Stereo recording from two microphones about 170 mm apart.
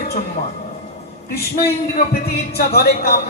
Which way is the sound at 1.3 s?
65° left (ahead or behind).